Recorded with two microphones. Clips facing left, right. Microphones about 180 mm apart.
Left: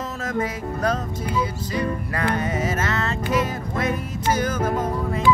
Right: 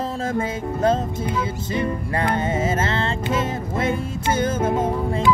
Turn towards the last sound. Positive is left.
turn(degrees=-25)  # may be behind; listen again after turning